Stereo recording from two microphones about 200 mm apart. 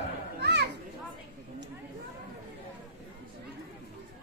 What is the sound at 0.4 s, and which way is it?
Children playing, 55° right (ahead or behind).